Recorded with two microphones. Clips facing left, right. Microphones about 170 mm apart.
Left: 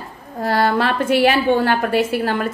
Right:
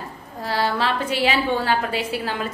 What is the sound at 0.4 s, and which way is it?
A woman's voice, 55° left (ahead or behind).